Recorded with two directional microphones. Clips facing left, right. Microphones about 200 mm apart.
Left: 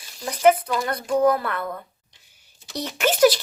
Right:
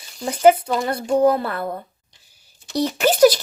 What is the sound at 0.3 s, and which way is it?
Speech, 30° right (ahead or behind).